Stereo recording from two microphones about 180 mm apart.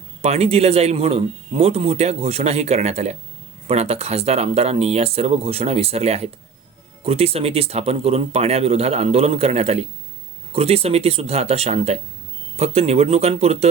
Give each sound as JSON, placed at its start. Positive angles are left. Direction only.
{"t": 0.2, "sound": "a man's voice", "side_deg": -35}